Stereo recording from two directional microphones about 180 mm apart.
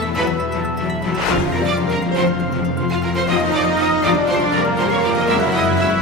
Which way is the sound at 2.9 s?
Centre (ahead or behind).